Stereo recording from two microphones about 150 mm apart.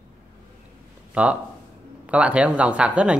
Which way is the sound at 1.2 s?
10° right (ahead or behind).